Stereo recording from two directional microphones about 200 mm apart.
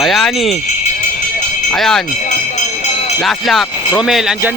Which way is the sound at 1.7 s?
Centre (ahead or behind).